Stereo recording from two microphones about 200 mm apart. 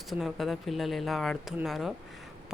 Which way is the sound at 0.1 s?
Centre (ahead or behind).